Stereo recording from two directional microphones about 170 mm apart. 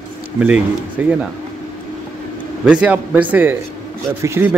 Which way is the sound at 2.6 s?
5° right (ahead or behind).